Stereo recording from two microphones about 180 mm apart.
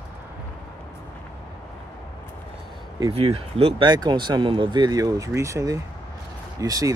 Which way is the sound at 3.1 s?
35° right (ahead or behind).